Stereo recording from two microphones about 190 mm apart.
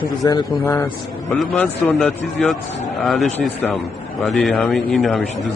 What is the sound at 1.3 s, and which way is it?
Speech, 5° left (ahead or behind).